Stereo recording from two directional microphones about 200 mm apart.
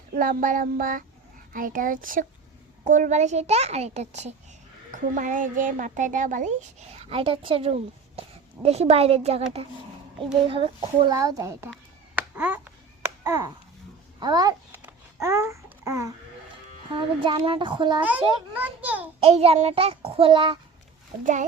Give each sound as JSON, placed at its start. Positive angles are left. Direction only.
{"t": 0.2, "sound": "child singing", "side_deg": -45}
{"t": 2.8, "sound": "a child's voice", "side_deg": -40}
{"t": 10.5, "sound": "speech", "side_deg": -25}
{"t": 12.1, "sound": "a sound", "side_deg": -10}
{"t": 13.2, "sound": "a child's voice", "side_deg": -15}
{"t": 15.2, "sound": "babbling", "side_deg": -15}
{"t": 17.2, "sound": "a child's voice", "side_deg": -25}
{"t": 18.0, "sound": "a sound", "side_deg": -10}
{"t": 19.2, "sound": "a child's voice", "side_deg": -30}